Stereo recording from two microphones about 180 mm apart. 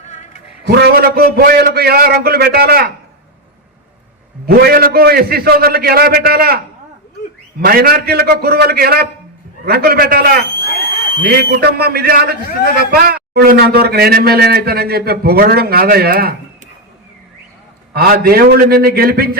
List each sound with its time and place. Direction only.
0.7 s a man's voice: 60° right (ahead or behind)
4.4 s a man's voice: 55° right (ahead or behind)
7.6 s a man's voice: 55° right (ahead or behind)
17.9 s a man's voice: 55° right (ahead or behind)